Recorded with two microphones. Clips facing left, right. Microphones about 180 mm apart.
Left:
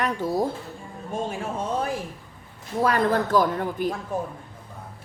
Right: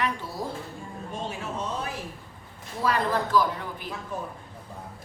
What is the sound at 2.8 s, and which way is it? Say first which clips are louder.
A woman's voice: left 4 dB; 50° left (ahead or behind).